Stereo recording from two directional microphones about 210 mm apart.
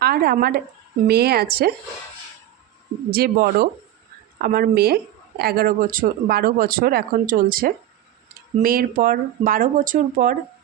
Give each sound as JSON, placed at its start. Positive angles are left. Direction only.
{"t": 0.0, "sound": "speech", "side_deg": -50}
{"t": 3.1, "sound": "speech", "side_deg": -45}